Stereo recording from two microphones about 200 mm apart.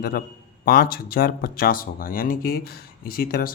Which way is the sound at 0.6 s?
50° left (ahead or behind).